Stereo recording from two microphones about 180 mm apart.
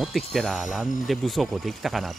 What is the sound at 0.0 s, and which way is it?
Speech, centre (ahead or behind).